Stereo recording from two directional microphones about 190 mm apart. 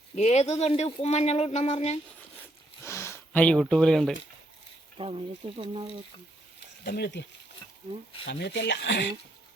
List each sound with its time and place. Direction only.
0.2 s speech: 35° left (ahead or behind)
2.8 s speech: 15° left (ahead or behind)
4.9 s speech: 30° right (ahead or behind)
6.8 s speech: 60° left (ahead or behind)
8.3 s speech: 65° left (ahead or behind)